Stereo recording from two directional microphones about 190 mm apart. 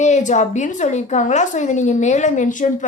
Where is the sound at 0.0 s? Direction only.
40° left (ahead or behind).